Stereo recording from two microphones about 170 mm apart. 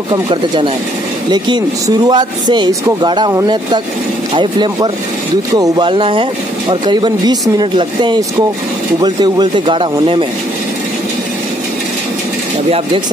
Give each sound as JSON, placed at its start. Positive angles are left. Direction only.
{"t": 0.1, "sound": "speech", "side_deg": -30}